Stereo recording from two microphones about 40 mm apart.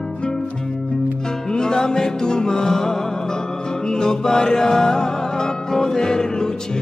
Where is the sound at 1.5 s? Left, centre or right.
Centre.